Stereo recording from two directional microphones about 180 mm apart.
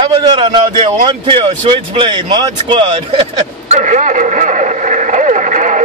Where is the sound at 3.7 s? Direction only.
45° right (ahead or behind).